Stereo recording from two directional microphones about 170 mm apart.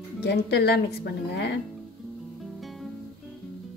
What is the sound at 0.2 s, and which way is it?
A woman's voice, 80° left.